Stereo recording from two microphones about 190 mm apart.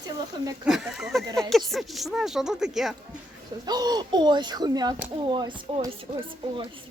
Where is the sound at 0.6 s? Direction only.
Centre (ahead or behind).